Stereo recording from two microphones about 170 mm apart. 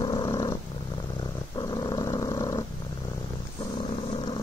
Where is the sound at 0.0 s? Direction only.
25° left (ahead or behind).